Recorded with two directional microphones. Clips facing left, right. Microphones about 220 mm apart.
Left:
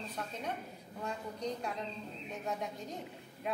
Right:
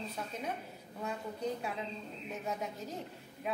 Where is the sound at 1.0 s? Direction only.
5° right (ahead or behind).